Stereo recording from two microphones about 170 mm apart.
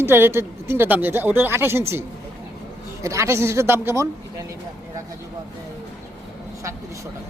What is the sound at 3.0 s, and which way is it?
A woman's voice, 15° right (ahead or behind).